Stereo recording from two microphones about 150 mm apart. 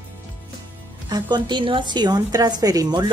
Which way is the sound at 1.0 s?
30° right (ahead or behind).